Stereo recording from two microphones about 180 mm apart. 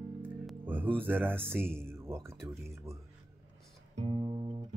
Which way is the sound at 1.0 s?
10° right (ahead or behind).